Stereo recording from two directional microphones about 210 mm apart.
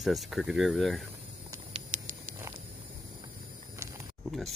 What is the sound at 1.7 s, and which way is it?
Patter, 35° right (ahead or behind).